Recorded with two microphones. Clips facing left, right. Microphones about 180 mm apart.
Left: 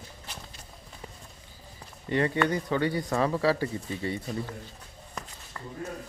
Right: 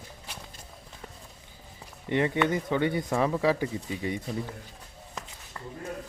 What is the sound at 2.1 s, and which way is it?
Speech, 20° right (ahead or behind).